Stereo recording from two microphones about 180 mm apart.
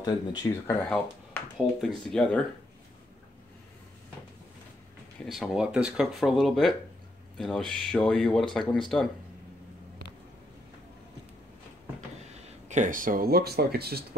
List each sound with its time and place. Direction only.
0.0 s speech: 25° left (ahead or behind)
0.8 s speech: 5° left (ahead or behind)
5.2 s speech: centre (ahead or behind)
12.6 s speech: 45° right (ahead or behind); by 14.0 s 60° right (ahead or behind)